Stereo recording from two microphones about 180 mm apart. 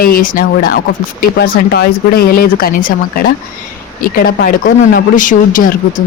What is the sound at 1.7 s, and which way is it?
Speech, 60° left (ahead or behind).